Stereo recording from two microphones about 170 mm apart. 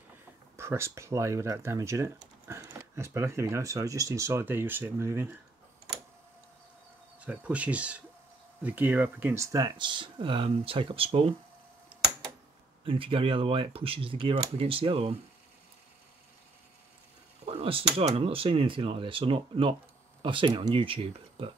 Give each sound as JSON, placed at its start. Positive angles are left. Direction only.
{"t": 0.6, "sound": "speech", "side_deg": -15}
{"t": 7.2, "sound": "speech", "side_deg": -10}
{"t": 12.8, "sound": "speech", "side_deg": -30}
{"t": 17.5, "sound": "speech", "side_deg": -35}